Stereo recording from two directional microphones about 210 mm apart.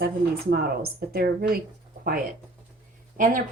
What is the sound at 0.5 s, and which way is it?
A woman's voice, 45° right (ahead or behind).